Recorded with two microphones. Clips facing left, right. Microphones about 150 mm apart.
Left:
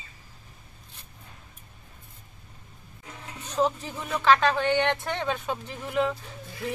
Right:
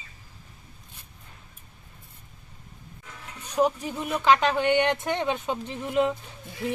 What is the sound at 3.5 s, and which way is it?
Speech, 15° right (ahead or behind).